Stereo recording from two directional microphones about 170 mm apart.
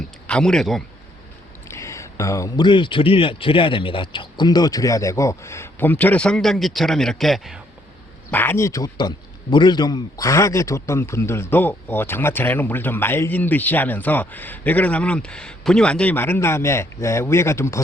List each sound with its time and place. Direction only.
0.3 s speech: 5° left (ahead or behind)
1.6 s speech: 15° left (ahead or behind); by 7.6 s centre (ahead or behind)
8.3 s a man's voice: 10° left (ahead or behind)